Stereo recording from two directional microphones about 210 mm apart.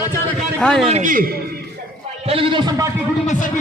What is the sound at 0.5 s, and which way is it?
Speech, 5° left (ahead or behind).